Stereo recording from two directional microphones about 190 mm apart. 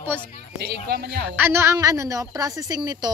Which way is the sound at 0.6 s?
60° right (ahead or behind).